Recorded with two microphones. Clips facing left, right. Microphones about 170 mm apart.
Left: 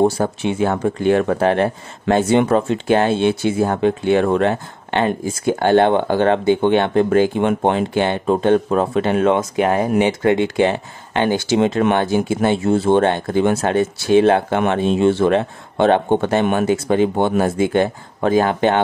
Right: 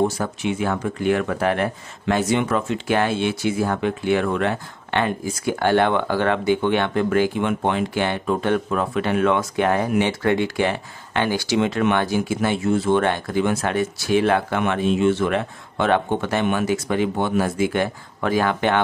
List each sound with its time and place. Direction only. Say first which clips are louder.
0.0 s speech: left 5 dB; 30° left (ahead or behind)
7.4 s speech: left 5 dB; 40° left (ahead or behind)
7.9 s speech: left 5 dB; 25° left (ahead or behind)